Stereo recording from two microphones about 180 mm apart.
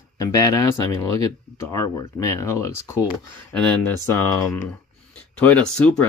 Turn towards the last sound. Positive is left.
turn(degrees=5)  # may be behind; listen again after turning